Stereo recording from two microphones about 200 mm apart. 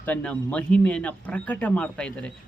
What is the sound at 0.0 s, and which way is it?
Speech, 5° left (ahead or behind).